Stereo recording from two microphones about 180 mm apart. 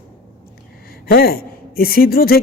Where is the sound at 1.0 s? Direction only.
55° left (ahead or behind).